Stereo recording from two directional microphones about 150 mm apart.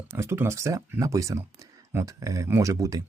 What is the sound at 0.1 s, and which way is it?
Speech, 15° right (ahead or behind).